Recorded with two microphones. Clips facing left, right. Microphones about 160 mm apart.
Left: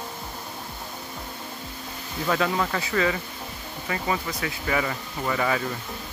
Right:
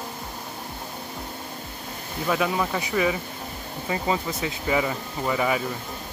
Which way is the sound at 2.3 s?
10° right (ahead or behind).